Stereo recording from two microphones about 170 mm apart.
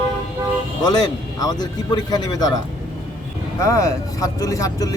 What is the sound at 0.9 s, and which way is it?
Speech, 25° left (ahead or behind).